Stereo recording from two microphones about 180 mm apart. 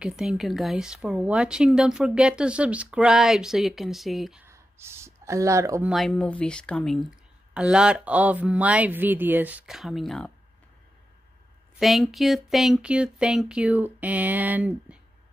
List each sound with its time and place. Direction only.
0.0 s a woman's voice: 5° right (ahead or behind)
4.5 s speech: 15° right (ahead or behind)
5.9 s a woman's voice: centre (ahead or behind)
11.8 s a woman's voice: centre (ahead or behind)